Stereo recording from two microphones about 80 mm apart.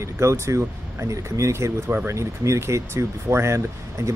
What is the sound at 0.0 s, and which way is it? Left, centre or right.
Speech, right.